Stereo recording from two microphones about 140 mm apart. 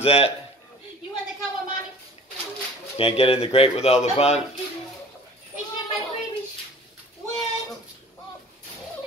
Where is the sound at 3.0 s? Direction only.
45° left (ahead or behind).